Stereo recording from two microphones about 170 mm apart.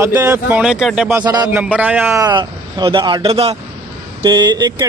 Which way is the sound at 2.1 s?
25° right (ahead or behind).